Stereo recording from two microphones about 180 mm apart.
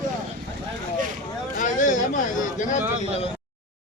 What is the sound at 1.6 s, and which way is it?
Speech, 45° left (ahead or behind).